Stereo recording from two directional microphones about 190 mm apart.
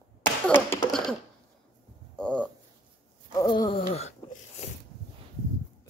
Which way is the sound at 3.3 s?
20° left (ahead or behind).